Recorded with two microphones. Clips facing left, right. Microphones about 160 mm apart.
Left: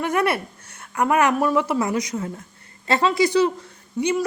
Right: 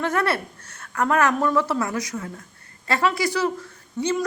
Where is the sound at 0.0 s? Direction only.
15° left (ahead or behind).